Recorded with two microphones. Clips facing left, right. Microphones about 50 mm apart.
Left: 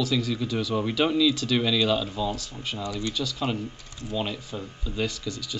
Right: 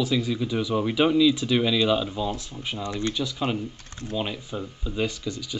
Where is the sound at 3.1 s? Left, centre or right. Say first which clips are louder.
Right 1 dB; centre.